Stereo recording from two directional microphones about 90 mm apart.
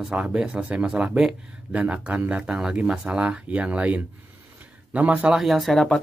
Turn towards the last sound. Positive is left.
turn(degrees=5)  # may be behind; listen again after turning